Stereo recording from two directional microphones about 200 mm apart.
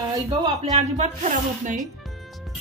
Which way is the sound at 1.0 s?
40° right (ahead or behind).